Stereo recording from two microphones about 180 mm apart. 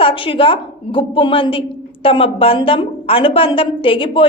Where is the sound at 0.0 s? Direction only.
30° left (ahead or behind).